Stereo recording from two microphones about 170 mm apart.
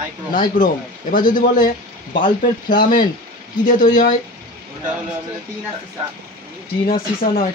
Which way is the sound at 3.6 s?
50° left (ahead or behind).